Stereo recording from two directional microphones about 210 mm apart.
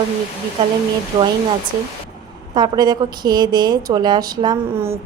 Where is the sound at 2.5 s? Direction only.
20° right (ahead or behind).